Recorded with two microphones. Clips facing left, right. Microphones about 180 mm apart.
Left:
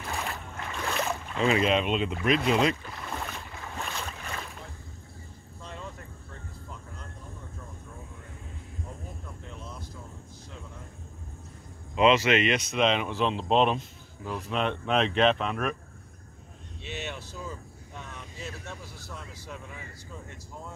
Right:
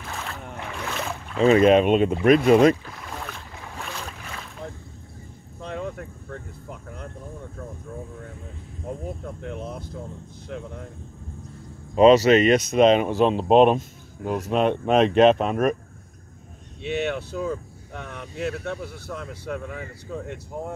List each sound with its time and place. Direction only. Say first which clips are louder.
0.0 s boat: even; centre (ahead or behind)
1.4 s speech: right 9 dB; 45° right (ahead or behind)
2.8 s boat: right 1 dB; centre (ahead or behind)
5.6 s a sound: right 10 dB; 65° right (ahead or behind)
9.2 s speech: right 10 dB; 65° right (ahead or behind)
11.9 s speech: right 8 dB; 40° right (ahead or behind)
16.8 s speech: right 12 dB; 60° right (ahead or behind)